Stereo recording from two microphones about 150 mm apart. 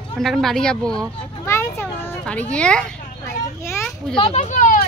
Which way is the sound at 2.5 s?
5° left (ahead or behind).